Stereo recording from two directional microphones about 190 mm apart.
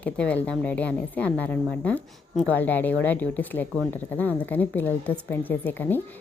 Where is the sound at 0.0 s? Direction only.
5° left (ahead or behind).